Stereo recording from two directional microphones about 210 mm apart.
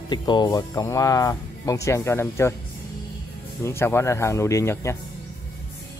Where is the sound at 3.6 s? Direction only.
10° left (ahead or behind).